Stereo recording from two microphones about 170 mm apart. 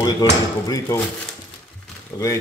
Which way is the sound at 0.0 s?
20° left (ahead or behind).